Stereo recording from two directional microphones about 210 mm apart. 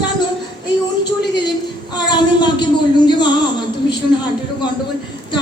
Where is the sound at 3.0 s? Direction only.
20° left (ahead or behind).